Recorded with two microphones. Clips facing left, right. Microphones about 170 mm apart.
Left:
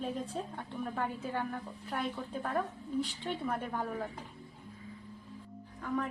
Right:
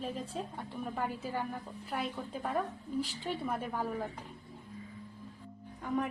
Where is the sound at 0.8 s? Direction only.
5° right (ahead or behind).